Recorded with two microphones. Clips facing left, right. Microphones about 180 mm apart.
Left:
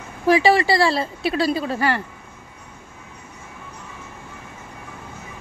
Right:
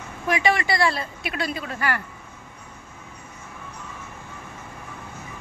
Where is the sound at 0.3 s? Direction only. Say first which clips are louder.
Left 7 dB; 30° left (ahead or behind).